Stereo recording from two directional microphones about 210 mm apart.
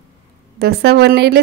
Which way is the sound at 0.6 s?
50° right (ahead or behind).